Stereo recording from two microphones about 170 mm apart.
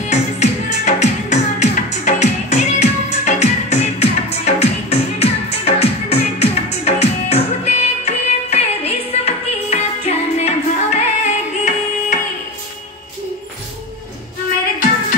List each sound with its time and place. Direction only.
0.1 s music: 40° left (ahead or behind)